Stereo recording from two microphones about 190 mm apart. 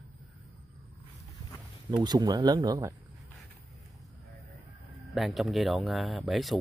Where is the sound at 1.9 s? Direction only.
20° right (ahead or behind).